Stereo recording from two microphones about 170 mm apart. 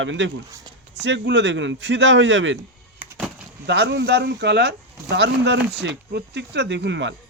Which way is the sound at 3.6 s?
80° right.